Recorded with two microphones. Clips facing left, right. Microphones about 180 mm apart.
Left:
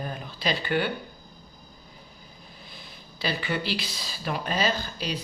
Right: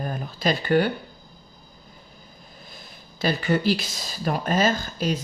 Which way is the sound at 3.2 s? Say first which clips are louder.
Right 6 dB; 45° right (ahead or behind).